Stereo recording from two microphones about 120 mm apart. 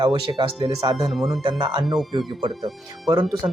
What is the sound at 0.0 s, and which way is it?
Speech, 40° right (ahead or behind).